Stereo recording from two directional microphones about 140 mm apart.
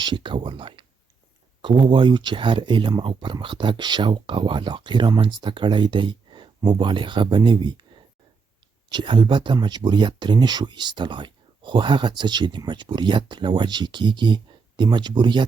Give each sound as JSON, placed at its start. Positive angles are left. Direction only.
{"t": 0.0, "sound": "speech", "side_deg": -35}
{"t": 8.9, "sound": "speech", "side_deg": -35}